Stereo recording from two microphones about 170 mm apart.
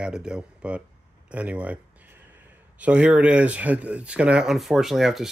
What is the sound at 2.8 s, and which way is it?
Speech, 5° right (ahead or behind).